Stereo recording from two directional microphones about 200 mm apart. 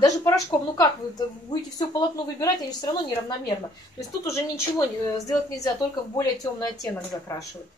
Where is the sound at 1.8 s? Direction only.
20° left (ahead or behind).